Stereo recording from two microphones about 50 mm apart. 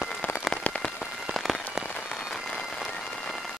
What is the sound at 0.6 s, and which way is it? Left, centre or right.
Rain on surface, left.